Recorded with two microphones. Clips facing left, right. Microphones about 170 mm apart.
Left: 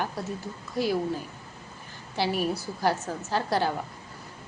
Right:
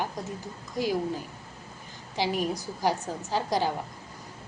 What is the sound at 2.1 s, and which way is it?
A woman's voice, 15° right (ahead or behind).